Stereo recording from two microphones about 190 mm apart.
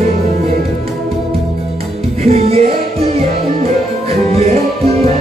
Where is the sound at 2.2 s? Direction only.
35° right (ahead or behind).